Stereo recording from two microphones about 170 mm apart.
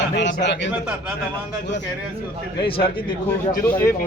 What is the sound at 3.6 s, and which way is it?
Speech, 10° left (ahead or behind).